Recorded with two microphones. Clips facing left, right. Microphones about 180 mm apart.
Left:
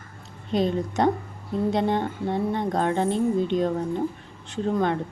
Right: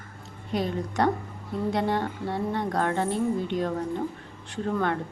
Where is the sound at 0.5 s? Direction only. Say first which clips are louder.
Left 4 dB; 20° left (ahead or behind).